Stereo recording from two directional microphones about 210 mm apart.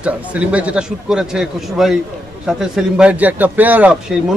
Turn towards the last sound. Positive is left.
turn(degrees=-5)  # may be behind; listen again after turning